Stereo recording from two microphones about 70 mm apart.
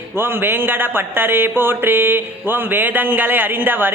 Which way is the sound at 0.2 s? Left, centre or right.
Right.